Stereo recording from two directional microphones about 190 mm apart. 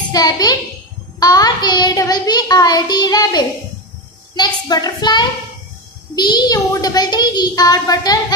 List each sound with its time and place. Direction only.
0.1 s a child's voice: 20° left (ahead or behind)
1.2 s child singing: 20° left (ahead or behind)
4.4 s a child's voice: 20° left (ahead or behind)